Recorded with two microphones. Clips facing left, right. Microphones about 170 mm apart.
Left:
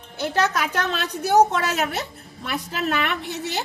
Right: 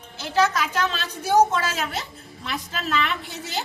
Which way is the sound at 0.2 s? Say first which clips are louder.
Even; 60° left (ahead or behind).